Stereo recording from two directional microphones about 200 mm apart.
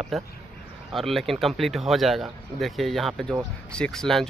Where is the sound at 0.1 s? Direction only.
Centre (ahead or behind).